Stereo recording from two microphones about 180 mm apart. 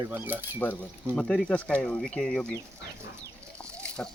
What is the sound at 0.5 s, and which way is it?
Speech, 10° left (ahead or behind).